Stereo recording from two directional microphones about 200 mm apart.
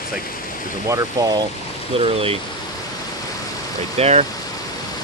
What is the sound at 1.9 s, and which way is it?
Speech, 30° right (ahead or behind).